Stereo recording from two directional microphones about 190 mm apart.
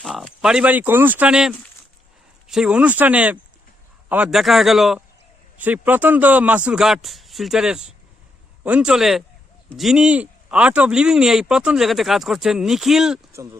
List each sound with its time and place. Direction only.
0.0 s speech: centre (ahead or behind)
13.3 s speech: 15° right (ahead or behind)